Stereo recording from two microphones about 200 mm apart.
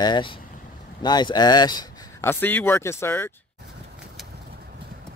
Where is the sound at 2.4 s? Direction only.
10° left (ahead or behind).